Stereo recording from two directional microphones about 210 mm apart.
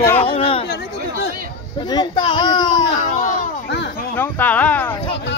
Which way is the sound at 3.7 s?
55° left (ahead or behind).